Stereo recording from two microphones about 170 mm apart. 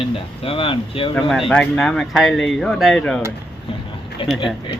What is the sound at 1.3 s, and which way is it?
Speech, centre (ahead or behind).